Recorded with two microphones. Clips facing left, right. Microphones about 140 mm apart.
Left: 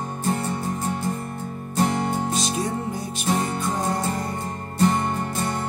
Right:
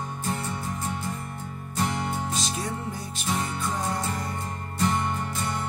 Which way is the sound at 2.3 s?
15° left (ahead or behind).